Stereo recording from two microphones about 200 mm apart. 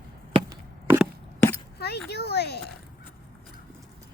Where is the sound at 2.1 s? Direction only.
55° left (ahead or behind).